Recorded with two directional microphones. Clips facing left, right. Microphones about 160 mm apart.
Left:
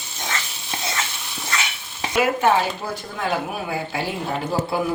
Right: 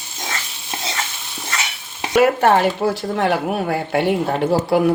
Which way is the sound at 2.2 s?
60° right (ahead or behind).